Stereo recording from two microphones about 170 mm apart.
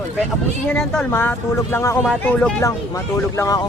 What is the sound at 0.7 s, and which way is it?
Speech, 5° left (ahead or behind).